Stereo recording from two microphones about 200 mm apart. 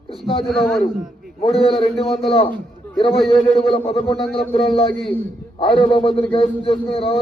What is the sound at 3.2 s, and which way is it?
A man's voice, 30° left (ahead or behind).